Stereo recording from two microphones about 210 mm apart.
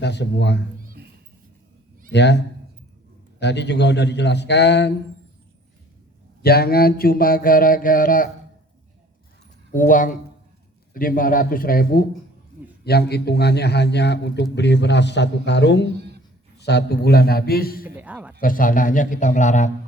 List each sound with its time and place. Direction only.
0.0 s a man's voice: 55° left (ahead or behind)
0.8 s music: 40° right (ahead or behind)
2.1 s a man's voice: 55° left (ahead or behind)
3.4 s a man's voice: 55° left (ahead or behind)
6.4 s mantra: 45° left (ahead or behind)
9.7 s a man's voice: 40° left (ahead or behind)
10.9 s mantra: 40° left (ahead or behind)
14.5 s a man's voice: 55° left (ahead or behind)
15.9 s a sound: 50° right (ahead or behind)
16.6 s mantra: 50° left (ahead or behind)
17.8 s a man's voice: 5° right (ahead or behind)
18.3 s a man's voice: 40° left (ahead or behind)